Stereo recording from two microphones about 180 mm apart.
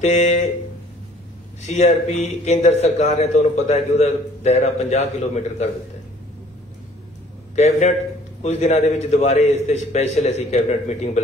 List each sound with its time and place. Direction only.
0.0 s a man's voice: 40° left (ahead or behind)
1.7 s a man's voice: 40° left (ahead or behind)
8.4 s a man's voice: 40° left (ahead or behind)